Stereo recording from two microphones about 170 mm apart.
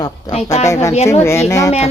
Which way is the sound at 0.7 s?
15° left (ahead or behind).